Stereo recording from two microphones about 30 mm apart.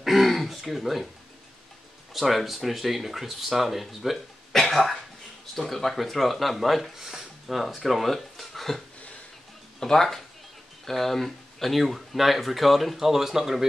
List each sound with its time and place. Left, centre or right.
0.0 s throat clearing: centre
0.6 s speech: centre
2.1 s speech: centre
4.5 s cough: centre
5.6 s speech: centre